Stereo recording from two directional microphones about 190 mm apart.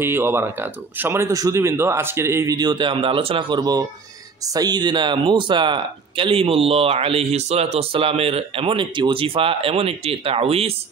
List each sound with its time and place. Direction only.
0.0 s speech: 10° right (ahead or behind); by 10.7 s 30° right (ahead or behind)